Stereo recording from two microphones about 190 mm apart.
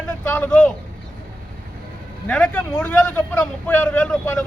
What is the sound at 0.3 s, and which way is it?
Speech, 10° left (ahead or behind).